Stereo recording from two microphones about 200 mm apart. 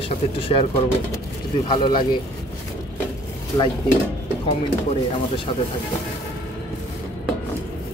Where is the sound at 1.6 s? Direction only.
25° left (ahead or behind).